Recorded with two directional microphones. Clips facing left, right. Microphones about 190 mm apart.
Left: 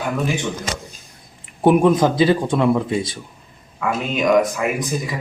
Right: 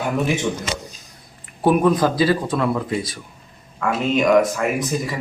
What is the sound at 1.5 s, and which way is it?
Speech, 20° left (ahead or behind).